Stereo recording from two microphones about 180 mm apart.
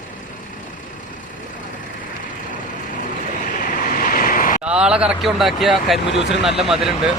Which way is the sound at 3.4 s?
50° left (ahead or behind).